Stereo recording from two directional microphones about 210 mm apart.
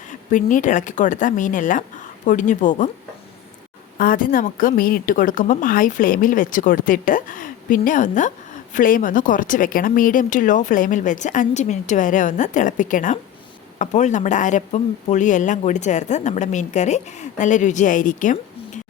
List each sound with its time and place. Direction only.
0.1 s speech: 35° left (ahead or behind)
3.9 s speech: 40° left (ahead or behind)